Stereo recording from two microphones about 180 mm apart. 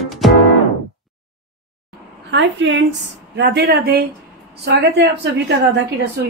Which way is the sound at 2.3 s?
90° right.